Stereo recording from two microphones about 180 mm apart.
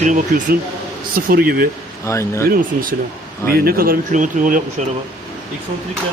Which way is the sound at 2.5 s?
50° right (ahead or behind).